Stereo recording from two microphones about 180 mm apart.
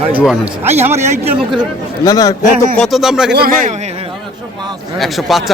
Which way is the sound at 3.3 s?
60° right (ahead or behind).